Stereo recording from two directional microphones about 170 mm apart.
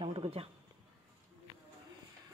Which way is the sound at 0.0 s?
35° right (ahead or behind).